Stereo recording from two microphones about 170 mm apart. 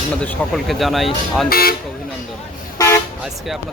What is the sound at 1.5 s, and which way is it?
Speech, 60° left (ahead or behind).